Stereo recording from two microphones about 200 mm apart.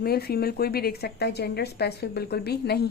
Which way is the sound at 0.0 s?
50° left (ahead or behind).